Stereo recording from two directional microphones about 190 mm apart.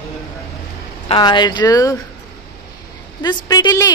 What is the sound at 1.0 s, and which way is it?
Speech, 25° left (ahead or behind).